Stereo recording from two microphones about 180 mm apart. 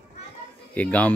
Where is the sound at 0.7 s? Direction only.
10° left (ahead or behind).